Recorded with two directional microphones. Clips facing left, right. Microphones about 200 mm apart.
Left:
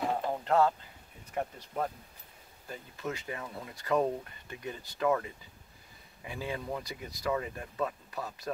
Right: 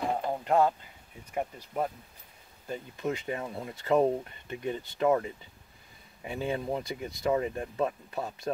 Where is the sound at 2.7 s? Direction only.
20° right (ahead or behind).